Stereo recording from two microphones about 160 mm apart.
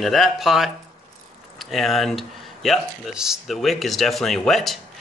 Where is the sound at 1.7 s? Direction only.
Centre (ahead or behind).